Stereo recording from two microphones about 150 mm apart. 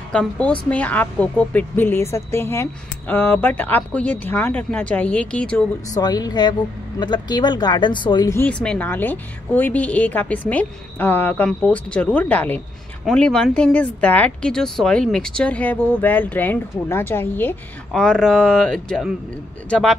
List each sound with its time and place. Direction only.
0.1 s a woman's voice: 10° left (ahead or behind)
5.9 s speech: 25° left (ahead or behind)
8.3 s a woman's voice: 10° left (ahead or behind)